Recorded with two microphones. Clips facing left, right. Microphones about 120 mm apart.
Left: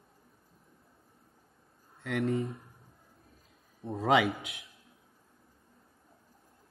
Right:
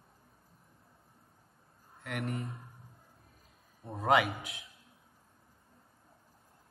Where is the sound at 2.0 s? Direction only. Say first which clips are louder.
Left 7 dB; 30° left (ahead or behind).